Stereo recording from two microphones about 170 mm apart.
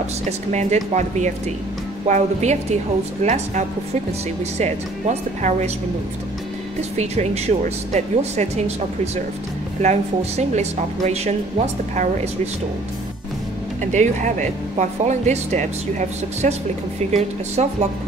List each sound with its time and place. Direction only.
0.5 s speech: 45° right (ahead or behind)
6.8 s speech: 40° right (ahead or behind)
13.9 s speech: 45° right (ahead or behind)